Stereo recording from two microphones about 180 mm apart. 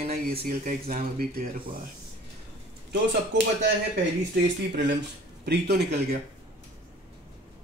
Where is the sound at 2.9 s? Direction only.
70° right (ahead or behind).